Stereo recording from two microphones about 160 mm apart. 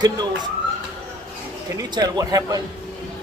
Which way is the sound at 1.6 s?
20° right (ahead or behind).